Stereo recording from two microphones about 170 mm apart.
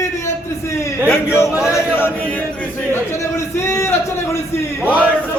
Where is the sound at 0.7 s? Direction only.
15° left (ahead or behind).